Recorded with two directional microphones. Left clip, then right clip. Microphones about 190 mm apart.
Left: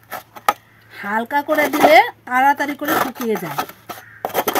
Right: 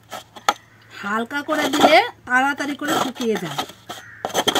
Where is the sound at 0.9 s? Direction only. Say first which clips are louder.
Left 4 dB; 25° left (ahead or behind).